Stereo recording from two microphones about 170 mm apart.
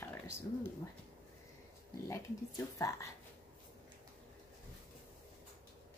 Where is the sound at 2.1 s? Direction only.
20° left (ahead or behind).